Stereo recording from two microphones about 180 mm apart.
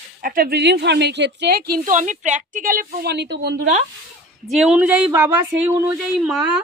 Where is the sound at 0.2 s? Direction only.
55° right (ahead or behind); by 3.6 s 70° right (ahead or behind).